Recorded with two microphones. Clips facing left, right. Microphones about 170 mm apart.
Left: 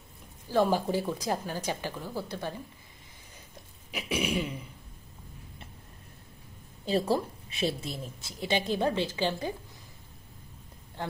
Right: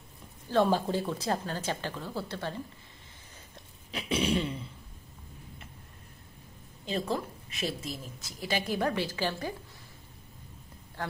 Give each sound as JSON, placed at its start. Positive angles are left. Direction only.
{"t": 0.5, "sound": "a woman's voice", "side_deg": 10}
{"t": 3.9, "sound": "a woman's voice", "side_deg": 10}
{"t": 6.9, "sound": "a woman's voice", "side_deg": 35}
{"t": 11.0, "sound": "a woman's voice", "side_deg": 20}